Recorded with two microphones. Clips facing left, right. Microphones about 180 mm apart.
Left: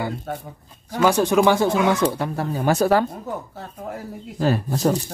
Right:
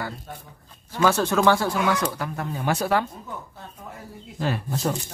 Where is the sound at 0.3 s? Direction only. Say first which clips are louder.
Left 10 dB; 75° left (ahead or behind).